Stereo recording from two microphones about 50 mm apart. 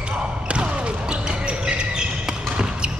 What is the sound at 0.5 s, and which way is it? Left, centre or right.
Basketball bounce, right.